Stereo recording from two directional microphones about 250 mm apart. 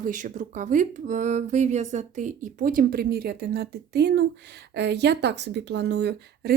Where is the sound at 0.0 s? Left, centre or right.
Right.